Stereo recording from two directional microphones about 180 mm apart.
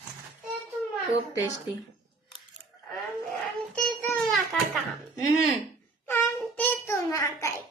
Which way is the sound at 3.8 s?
Centre (ahead or behind).